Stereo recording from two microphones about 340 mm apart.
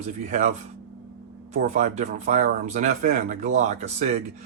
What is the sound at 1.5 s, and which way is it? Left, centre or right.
Speech, right.